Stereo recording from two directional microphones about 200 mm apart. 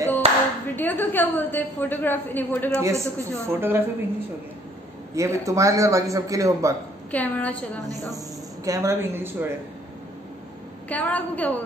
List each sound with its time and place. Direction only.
0.2 s clapping: 30° right (ahead or behind)
0.7 s a woman's voice: 10° left (ahead or behind)
2.8 s a man's voice: 15° right (ahead or behind)
5.1 s a man's voice: 15° right (ahead or behind)
7.1 s a woman's voice: 5° left (ahead or behind)
8.6 s a man's voice: 15° right (ahead or behind)
10.9 s a woman's voice: 5° left (ahead or behind)